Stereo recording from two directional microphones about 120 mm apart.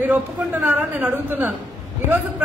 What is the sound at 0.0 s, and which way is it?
A man's voice, 15° right (ahead or behind).